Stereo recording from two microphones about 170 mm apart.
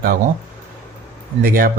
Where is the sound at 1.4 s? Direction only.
60° right (ahead or behind).